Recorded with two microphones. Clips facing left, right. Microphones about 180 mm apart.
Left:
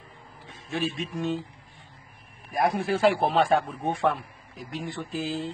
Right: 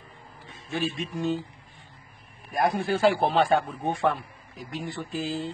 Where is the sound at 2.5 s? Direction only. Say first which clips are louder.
Even; centre (ahead or behind).